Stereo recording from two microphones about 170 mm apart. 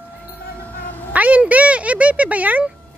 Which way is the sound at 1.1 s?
10° right (ahead or behind).